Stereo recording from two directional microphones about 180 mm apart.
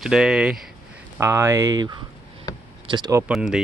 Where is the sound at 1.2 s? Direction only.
15° right (ahead or behind).